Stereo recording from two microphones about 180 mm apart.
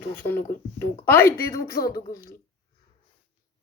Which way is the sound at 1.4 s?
55° left (ahead or behind).